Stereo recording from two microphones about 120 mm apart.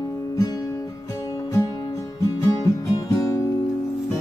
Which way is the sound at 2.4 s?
30° left (ahead or behind).